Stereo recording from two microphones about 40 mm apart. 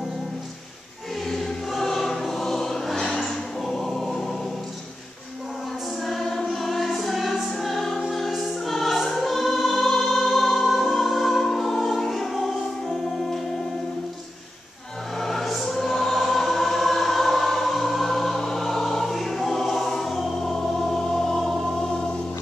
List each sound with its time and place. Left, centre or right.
1.3 s choir: centre
6.0 s music: centre
15.1 s choir: centre